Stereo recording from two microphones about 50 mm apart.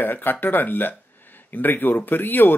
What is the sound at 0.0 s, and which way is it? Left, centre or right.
Speech, left.